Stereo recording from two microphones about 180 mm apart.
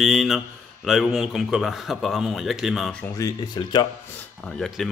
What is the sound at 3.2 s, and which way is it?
Speech, 20° left (ahead or behind).